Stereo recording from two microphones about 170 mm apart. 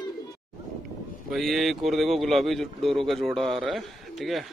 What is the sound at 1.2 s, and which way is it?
Speech, centre (ahead or behind).